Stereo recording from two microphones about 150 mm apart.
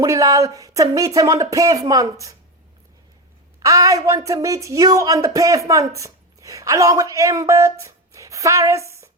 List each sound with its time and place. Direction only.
0.0 s speech: 20° right (ahead or behind)
3.6 s speech: 20° right (ahead or behind)